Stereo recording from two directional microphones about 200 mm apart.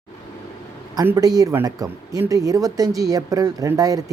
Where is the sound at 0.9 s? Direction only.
15° right (ahead or behind).